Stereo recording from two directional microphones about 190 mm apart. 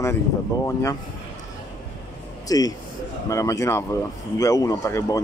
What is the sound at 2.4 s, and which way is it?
Speech, 20° left (ahead or behind).